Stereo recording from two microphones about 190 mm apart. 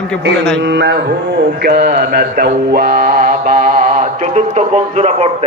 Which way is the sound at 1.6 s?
55° right (ahead or behind).